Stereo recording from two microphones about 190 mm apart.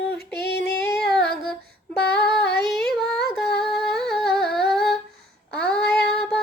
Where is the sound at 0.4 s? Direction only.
60° left (ahead or behind).